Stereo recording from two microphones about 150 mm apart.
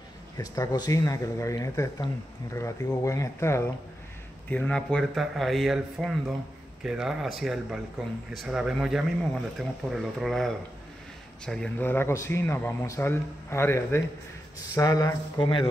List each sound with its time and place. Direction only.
0.4 s speech: 25° left (ahead or behind)